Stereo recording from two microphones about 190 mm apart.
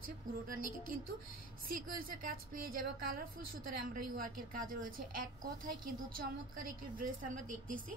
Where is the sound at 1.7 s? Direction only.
50° right (ahead or behind).